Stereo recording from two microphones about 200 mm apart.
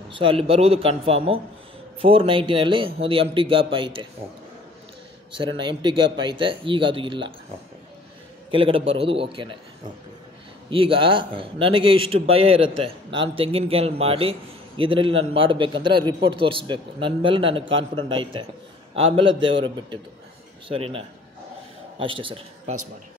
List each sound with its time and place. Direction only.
0.1 s a man's voice: 25° right (ahead or behind)
5.3 s a man's voice: 25° right (ahead or behind)
8.5 s a man's voice: 25° right (ahead or behind)
10.7 s a man's voice: 25° right (ahead or behind)